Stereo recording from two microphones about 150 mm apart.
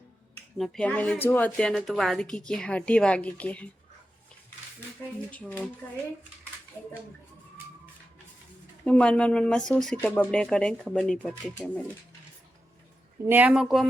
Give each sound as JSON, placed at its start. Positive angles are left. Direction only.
{"t": 0.5, "sound": "a woman's voice", "side_deg": 0}
{"t": 5.3, "sound": "a woman's voice", "side_deg": 10}
{"t": 8.8, "sound": "a woman's voice", "side_deg": 5}
{"t": 13.2, "sound": "a woman's voice", "side_deg": -10}